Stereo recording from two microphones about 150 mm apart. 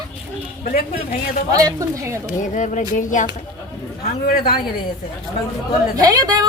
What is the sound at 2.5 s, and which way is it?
Speech, 55° left (ahead or behind).